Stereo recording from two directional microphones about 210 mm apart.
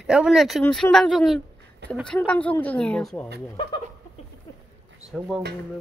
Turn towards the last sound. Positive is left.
turn(degrees=0)  # may be behind; listen again after turning